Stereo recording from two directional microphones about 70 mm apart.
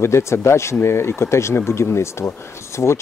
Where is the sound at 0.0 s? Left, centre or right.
Left.